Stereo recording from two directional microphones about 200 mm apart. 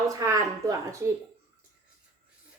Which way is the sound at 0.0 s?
15° right (ahead or behind).